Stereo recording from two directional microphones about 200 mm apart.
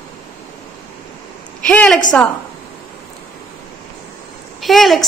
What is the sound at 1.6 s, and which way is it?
Speech, 5° left (ahead or behind).